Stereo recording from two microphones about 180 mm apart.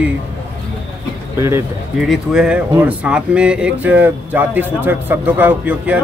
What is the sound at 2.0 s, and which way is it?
Speech, 5° right (ahead or behind).